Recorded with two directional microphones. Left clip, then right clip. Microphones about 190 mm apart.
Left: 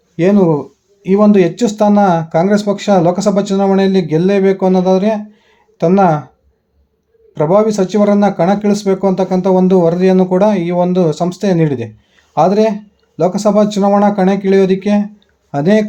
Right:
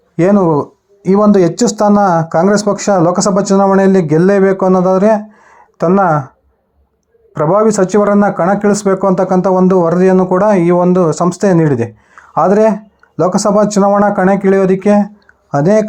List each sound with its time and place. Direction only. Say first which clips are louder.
1.0 s speech: right 1 dB; 5° right (ahead or behind)
7.5 s speech: right 2 dB; 5° right (ahead or behind)
13.8 s speech: right 2 dB; 15° right (ahead or behind)